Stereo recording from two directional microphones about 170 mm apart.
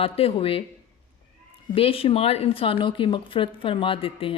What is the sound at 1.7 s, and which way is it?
Speech, 35° left (ahead or behind).